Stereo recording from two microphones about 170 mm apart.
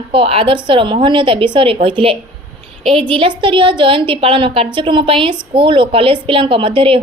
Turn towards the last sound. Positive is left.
turn(degrees=-30)  # may be behind; listen again after turning